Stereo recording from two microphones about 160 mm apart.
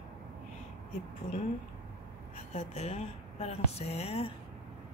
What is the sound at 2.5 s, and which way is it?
Speech, 45° left (ahead or behind).